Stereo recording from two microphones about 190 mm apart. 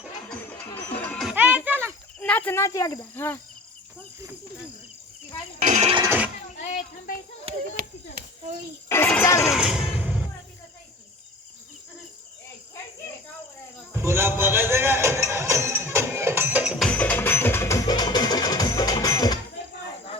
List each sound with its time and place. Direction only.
0.3 s music: 10° left (ahead or behind); by 2.0 s 10° right (ahead or behind)
2.1 s speech: 5° left (ahead or behind)
5.6 s speech: 35° right (ahead or behind)
6.0 s speech: 10° right (ahead or behind)
6.7 s speech: 40° left (ahead or behind)
7.8 s speech: 45° right (ahead or behind)
8.9 s speech: 10° left (ahead or behind)
13.9 s a man's voice: 15° right (ahead or behind)
16.7 s music: 5° left (ahead or behind)